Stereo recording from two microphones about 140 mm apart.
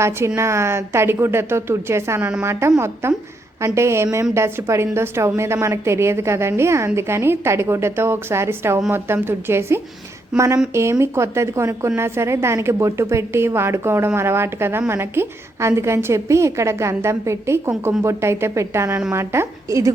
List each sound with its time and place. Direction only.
0.3 s a woman's voice: 20° right (ahead or behind)